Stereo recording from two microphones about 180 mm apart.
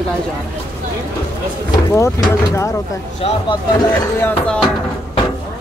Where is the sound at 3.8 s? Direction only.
10° left (ahead or behind).